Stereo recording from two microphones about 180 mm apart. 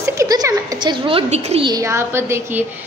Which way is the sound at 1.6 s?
20° right (ahead or behind).